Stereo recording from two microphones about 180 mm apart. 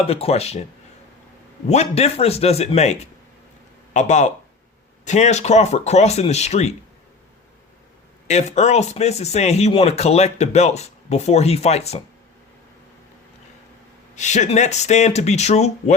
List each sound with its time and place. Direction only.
0.1 s speech: 35° left (ahead or behind)
1.6 s speech: 35° left (ahead or behind)
8.3 s speech: 40° left (ahead or behind)
14.2 s speech: 40° left (ahead or behind)